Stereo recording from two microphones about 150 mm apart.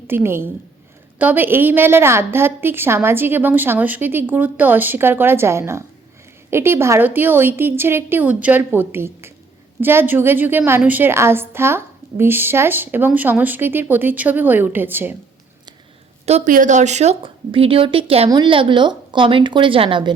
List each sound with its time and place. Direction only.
0.1 s a woman's voice: 15° right (ahead or behind)
16.2 s a woman's voice: 45° right (ahead or behind)
16.5 s a woman's voice: 55° right (ahead or behind); by 20.1 s 35° right (ahead or behind)